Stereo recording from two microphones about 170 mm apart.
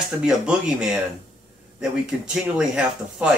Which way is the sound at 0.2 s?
5° right (ahead or behind).